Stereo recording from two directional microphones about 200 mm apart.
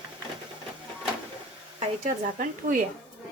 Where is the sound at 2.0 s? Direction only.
40° right (ahead or behind).